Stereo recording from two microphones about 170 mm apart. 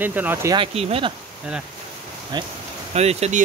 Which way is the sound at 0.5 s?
35° right (ahead or behind).